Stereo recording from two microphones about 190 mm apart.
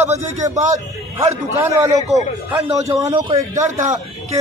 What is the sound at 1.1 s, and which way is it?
A man's voice, 15° right (ahead or behind).